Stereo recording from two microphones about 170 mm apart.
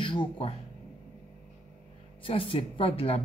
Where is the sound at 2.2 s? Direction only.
30° left (ahead or behind).